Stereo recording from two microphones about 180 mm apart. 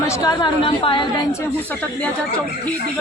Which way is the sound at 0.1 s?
20° left (ahead or behind).